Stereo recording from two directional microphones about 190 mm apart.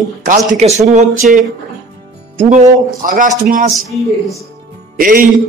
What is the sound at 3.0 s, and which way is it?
Speech, 45° right (ahead or behind).